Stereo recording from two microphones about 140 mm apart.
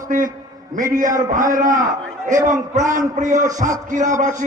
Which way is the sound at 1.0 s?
70° right (ahead or behind).